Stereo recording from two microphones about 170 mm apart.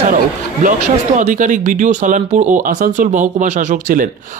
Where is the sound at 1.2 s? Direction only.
45° right (ahead or behind).